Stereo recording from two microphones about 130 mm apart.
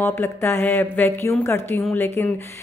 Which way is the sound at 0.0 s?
15° left (ahead or behind).